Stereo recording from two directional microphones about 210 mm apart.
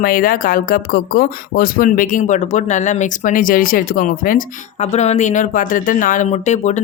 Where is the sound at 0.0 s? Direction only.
40° left (ahead or behind).